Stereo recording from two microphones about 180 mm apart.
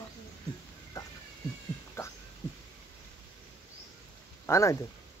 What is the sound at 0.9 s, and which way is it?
Cat, 20° left (ahead or behind).